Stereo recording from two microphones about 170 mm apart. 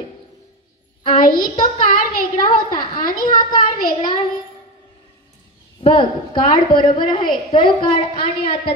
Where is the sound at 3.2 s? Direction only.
25° left (ahead or behind).